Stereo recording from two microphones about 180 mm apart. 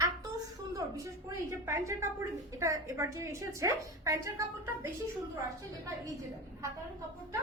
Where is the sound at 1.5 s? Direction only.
15° right (ahead or behind).